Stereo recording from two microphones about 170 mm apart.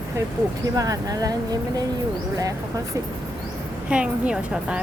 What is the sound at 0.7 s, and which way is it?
Speech, 20° right (ahead or behind).